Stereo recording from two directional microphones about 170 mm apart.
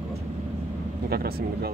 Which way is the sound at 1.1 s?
65° right (ahead or behind).